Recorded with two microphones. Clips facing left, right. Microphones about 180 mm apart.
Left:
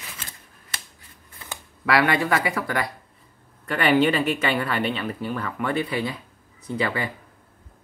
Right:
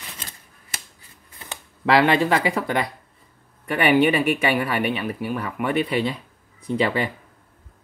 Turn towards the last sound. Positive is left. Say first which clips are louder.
# right 4 dB
turn(degrees=-20)  # may be behind; listen again after turning